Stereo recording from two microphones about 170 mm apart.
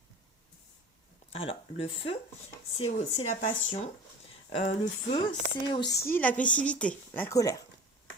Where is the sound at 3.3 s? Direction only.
40° left (ahead or behind).